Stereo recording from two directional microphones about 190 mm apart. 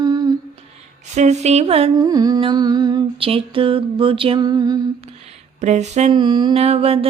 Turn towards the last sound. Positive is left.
turn(degrees=-30)  # may be behind; listen again after turning